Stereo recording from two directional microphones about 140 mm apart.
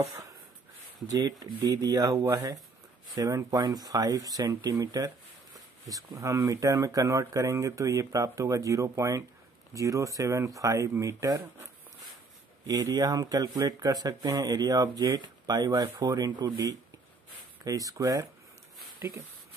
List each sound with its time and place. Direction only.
1.0 s speech: 25° right (ahead or behind)
12.6 s speech: 25° right (ahead or behind)